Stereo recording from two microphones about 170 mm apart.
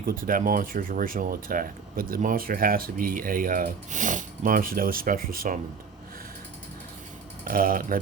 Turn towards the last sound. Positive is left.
turn(degrees=-55)  # may be behind; listen again after turning